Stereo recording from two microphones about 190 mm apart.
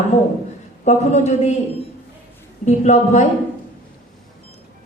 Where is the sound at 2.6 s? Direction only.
35° left (ahead or behind).